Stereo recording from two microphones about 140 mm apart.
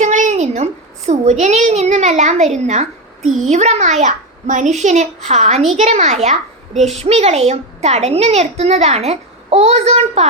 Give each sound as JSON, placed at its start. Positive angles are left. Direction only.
{"t": 0.0, "sound": "a child's voice", "side_deg": -60}
{"t": 6.7, "sound": "a child's voice", "side_deg": 0}
{"t": 7.0, "sound": "a child's voice", "side_deg": -50}